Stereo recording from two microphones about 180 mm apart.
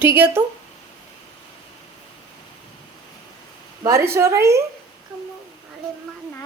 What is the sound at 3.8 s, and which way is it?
Speech, 20° right (ahead or behind).